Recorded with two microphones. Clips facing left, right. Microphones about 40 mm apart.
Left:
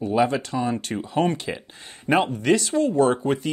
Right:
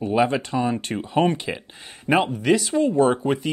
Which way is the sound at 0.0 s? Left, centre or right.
Centre.